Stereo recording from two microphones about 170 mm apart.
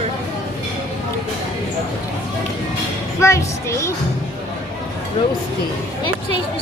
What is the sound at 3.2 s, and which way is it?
Speech, 15° left (ahead or behind).